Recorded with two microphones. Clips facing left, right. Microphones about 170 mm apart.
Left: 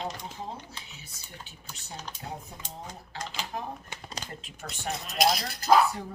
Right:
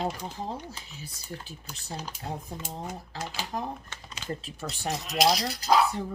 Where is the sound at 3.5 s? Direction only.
35° right (ahead or behind).